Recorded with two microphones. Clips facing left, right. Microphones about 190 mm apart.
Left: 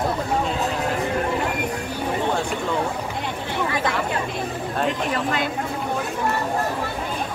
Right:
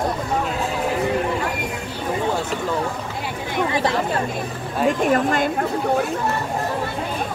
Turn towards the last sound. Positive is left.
turn(degrees=-50)  # may be behind; listen again after turning